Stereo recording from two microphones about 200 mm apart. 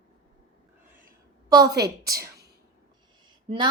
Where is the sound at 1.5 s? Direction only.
20° right (ahead or behind).